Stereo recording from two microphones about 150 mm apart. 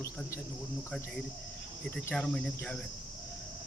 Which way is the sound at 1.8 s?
10° left (ahead or behind).